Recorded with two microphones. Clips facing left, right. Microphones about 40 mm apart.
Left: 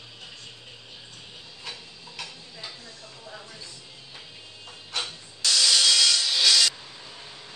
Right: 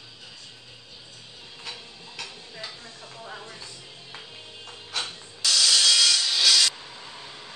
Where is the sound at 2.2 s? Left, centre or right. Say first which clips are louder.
Even; centre.